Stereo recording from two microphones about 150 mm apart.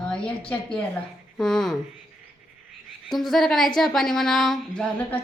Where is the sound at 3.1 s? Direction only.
Centre (ahead or behind).